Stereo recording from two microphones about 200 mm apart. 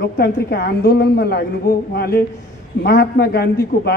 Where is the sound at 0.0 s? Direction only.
55° left (ahead or behind).